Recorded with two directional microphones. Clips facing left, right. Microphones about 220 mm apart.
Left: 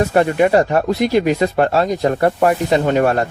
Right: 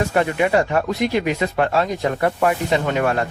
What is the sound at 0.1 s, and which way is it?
Speech, 40° left (ahead or behind).